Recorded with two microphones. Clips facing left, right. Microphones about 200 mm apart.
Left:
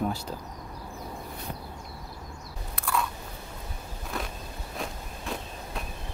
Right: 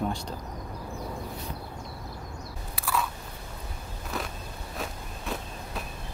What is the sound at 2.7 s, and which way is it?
Biting, 5° right (ahead or behind).